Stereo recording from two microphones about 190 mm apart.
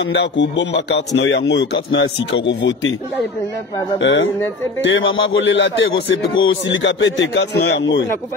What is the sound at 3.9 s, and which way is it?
Speech, 70° left (ahead or behind).